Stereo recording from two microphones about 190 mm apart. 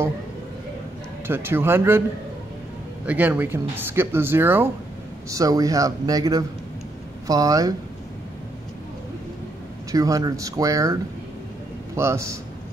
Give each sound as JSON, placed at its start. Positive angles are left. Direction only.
{"t": 1.2, "sound": "speech", "side_deg": -10}
{"t": 3.1, "sound": "speech", "side_deg": -10}
{"t": 9.8, "sound": "speech", "side_deg": -15}